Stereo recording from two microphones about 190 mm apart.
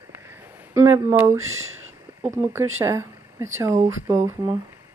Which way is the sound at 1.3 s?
90° right.